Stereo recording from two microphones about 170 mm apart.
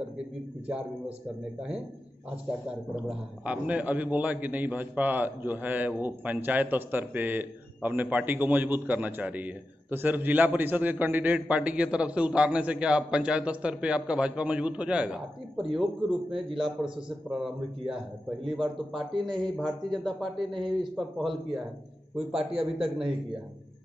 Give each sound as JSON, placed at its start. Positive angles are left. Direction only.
{"t": 0.7, "sound": "a man's voice", "side_deg": -5}
{"t": 3.0, "sound": "a man's voice", "side_deg": -5}
{"t": 17.3, "sound": "speech", "side_deg": -5}
{"t": 22.5, "sound": "a man's voice", "side_deg": -35}